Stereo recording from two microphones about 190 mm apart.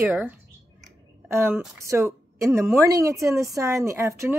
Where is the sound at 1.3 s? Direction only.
10° right (ahead or behind).